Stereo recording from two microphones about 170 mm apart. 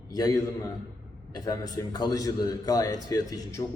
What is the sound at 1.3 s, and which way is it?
A man's voice, 25° left (ahead or behind).